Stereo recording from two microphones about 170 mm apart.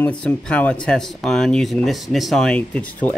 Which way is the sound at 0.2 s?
5° left (ahead or behind).